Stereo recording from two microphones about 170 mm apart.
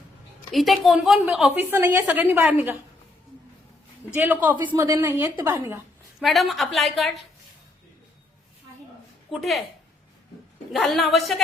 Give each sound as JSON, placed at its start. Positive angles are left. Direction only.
{"t": 0.5, "sound": "a woman's voice", "side_deg": 0}
{"t": 4.1, "sound": "a woman's voice", "side_deg": -10}
{"t": 4.7, "sound": "a woman's voice", "side_deg": -20}
{"t": 6.1, "sound": "a woman's voice", "side_deg": 0}
{"t": 9.3, "sound": "a woman's voice", "side_deg": 0}
{"t": 10.7, "sound": "a woman's voice", "side_deg": 0}